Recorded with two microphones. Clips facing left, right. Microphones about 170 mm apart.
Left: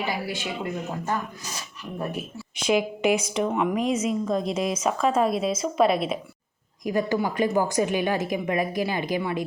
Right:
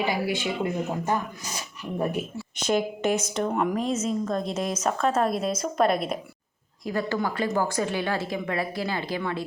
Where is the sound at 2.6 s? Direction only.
5° left (ahead or behind).